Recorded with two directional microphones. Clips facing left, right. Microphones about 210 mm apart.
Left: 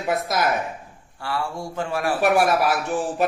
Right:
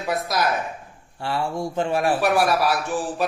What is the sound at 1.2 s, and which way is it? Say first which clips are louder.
Speech: right 3 dB; 20° right (ahead or behind).